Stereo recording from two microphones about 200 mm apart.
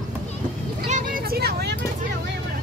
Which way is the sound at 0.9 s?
50° right (ahead or behind).